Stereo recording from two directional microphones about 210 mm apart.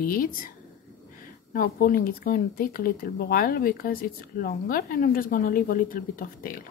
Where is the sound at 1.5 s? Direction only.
45° left (ahead or behind).